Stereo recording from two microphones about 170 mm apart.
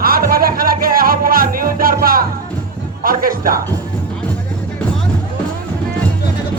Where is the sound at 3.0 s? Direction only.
55° right (ahead or behind).